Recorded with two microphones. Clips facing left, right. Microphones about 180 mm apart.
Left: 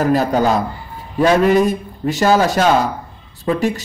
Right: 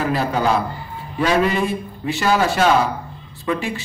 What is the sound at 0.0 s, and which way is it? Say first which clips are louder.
Speech: left 5 dB; 45° left (ahead or behind).